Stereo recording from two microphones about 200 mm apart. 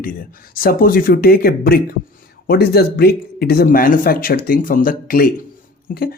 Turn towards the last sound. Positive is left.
turn(degrees=45)  # may be behind; listen again after turning